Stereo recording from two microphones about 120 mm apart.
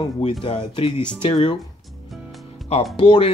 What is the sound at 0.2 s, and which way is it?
Speech, 55° left (ahead or behind).